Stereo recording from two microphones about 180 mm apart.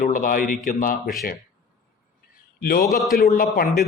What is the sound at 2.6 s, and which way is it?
A man's voice, 55° left (ahead or behind).